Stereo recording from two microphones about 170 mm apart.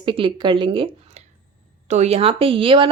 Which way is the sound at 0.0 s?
30° right (ahead or behind).